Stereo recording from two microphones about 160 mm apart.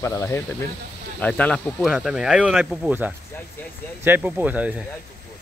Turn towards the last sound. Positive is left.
turn(degrees=-10)  # may be behind; listen again after turning